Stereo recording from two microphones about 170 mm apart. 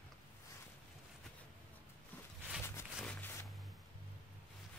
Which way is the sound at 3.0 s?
10° left (ahead or behind).